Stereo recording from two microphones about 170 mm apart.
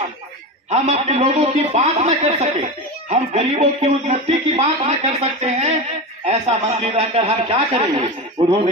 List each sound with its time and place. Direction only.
0.7 s a man's voice: 40° right (ahead or behind)